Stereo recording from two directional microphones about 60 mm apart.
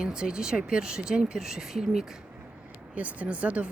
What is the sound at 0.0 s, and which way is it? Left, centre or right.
Speech, centre.